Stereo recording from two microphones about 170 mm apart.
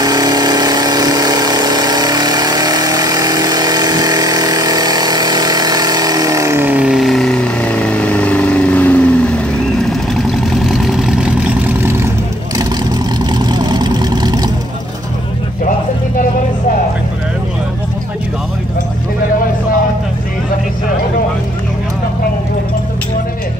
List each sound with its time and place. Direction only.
0.0 s vehicle: 25° right (ahead or behind)
13.2 s vehicle: 25° right (ahead or behind)